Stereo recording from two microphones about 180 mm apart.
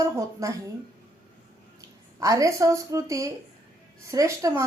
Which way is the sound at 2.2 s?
20° right (ahead or behind).